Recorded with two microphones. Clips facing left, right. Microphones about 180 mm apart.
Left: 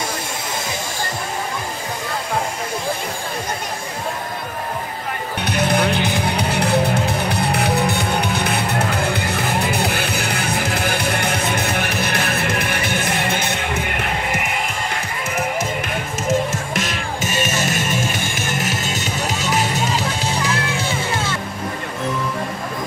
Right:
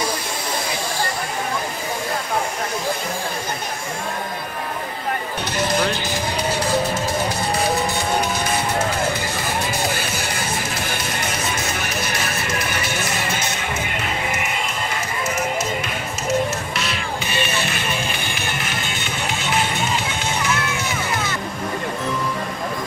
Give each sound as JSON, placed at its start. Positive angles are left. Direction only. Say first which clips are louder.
{"t": 5.5, "sound": "music", "louder": "left 3 dB", "side_deg": 60}
{"t": 16.3, "sound": "music", "louder": "left 1 dB", "side_deg": 45}